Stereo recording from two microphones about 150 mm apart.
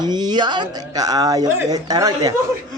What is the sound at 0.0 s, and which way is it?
Speech, 30° right (ahead or behind).